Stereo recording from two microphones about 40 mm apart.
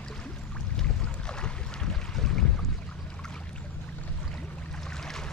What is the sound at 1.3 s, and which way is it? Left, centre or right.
Boat, left.